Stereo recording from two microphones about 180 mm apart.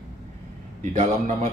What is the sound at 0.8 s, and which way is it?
Speech, 40° right (ahead or behind).